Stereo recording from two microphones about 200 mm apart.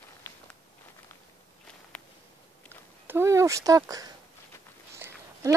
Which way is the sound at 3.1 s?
15° right (ahead or behind).